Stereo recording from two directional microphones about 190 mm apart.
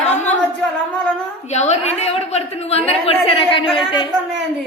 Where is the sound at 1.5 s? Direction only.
35° left (ahead or behind).